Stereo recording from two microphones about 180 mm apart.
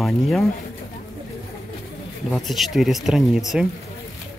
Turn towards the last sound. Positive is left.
turn(degrees=0)  # may be behind; listen again after turning